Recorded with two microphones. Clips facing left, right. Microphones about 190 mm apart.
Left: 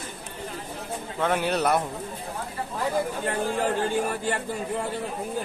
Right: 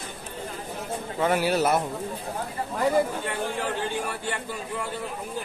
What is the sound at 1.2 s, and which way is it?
Speech, 5° right (ahead or behind).